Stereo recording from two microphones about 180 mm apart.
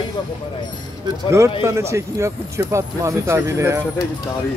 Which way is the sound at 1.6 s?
15° right (ahead or behind).